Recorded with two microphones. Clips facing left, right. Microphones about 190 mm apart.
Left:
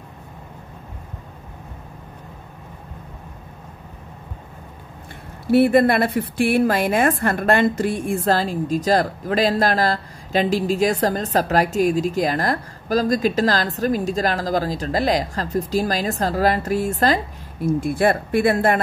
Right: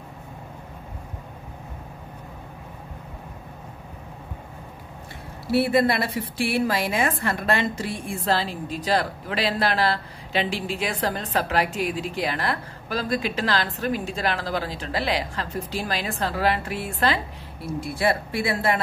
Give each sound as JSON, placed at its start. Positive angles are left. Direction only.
{"t": 5.5, "sound": "a woman's voice", "side_deg": 50}